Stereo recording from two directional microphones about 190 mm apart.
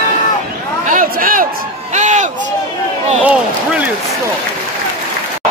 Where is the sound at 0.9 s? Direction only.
45° right (ahead or behind).